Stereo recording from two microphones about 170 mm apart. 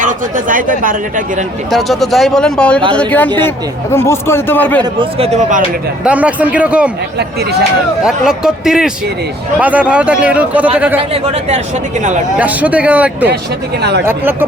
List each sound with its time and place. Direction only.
0.0 s a man's voice: 50° right (ahead or behind)
1.7 s a man's voice: centre (ahead or behind)
4.8 s speech: 30° right (ahead or behind); by 5.6 s 45° right (ahead or behind)
6.1 s speech: 10° right (ahead or behind)
8.0 s speech: 5° right (ahead or behind)
11.1 s speech: 40° right (ahead or behind)
12.4 s speech: 10° right (ahead or behind)